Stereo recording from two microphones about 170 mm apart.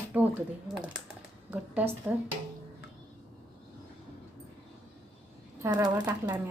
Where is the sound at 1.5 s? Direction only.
10° right (ahead or behind).